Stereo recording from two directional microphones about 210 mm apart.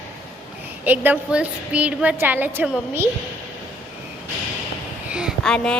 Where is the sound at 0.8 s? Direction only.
10° right (ahead or behind).